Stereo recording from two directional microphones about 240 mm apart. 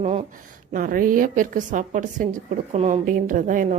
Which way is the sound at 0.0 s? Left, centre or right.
Right.